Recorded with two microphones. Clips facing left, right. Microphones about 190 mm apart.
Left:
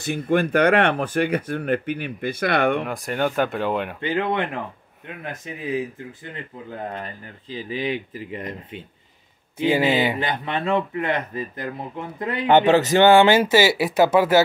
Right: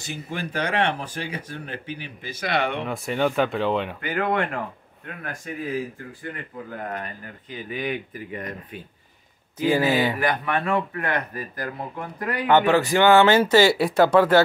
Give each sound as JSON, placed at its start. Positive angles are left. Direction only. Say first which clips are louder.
{"t": 0.3, "sound": "speech", "louder": "left 10 dB", "side_deg": 60}
{"t": 2.9, "sound": "speech", "louder": "even", "side_deg": 0}
{"t": 4.0, "sound": "speech", "louder": "left 1 dB", "side_deg": 25}
{"t": 6.9, "sound": "speech", "louder": "even", "side_deg": 30}